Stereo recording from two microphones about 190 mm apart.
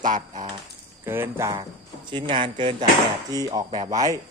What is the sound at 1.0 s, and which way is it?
Speech, 10° right (ahead or behind).